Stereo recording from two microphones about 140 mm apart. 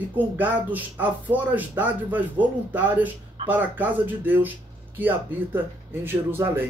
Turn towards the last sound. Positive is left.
turn(degrees=-15)  # may be behind; listen again after turning